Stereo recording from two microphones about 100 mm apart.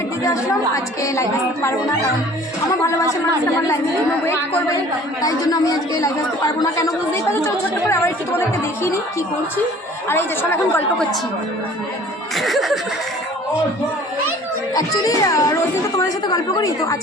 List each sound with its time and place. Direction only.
0.2 s speech: 35° left (ahead or behind)
6.6 s a woman's voice: 35° left (ahead or behind)
12.4 s music: centre (ahead or behind)
14.7 s speech: 35° left (ahead or behind)